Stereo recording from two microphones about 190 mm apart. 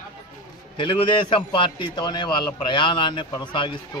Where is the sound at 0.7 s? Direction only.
25° left (ahead or behind).